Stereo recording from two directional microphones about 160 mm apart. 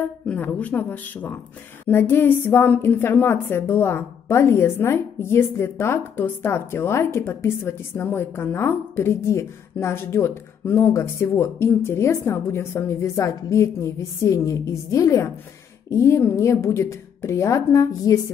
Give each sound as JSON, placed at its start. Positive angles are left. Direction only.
{"t": 0.3, "sound": "a woman's voice", "side_deg": 10}